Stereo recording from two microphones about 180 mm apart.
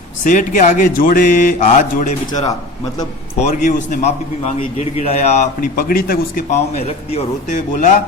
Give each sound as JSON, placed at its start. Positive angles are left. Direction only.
{"t": 0.3, "sound": "a man's voice", "side_deg": 45}
{"t": 5.5, "sound": "speech", "side_deg": 50}
{"t": 6.5, "sound": "a man's voice", "side_deg": 35}